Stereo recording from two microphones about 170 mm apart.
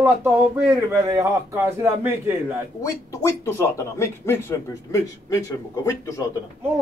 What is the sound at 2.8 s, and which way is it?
Speech, 20° left (ahead or behind).